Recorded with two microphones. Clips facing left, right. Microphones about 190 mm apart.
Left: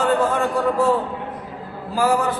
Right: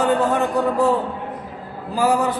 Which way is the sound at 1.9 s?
15° right (ahead or behind).